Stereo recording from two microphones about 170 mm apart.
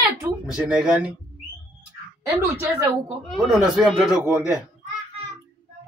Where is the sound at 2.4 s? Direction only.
15° right (ahead or behind).